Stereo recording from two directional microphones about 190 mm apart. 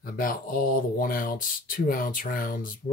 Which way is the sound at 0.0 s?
50° left (ahead or behind).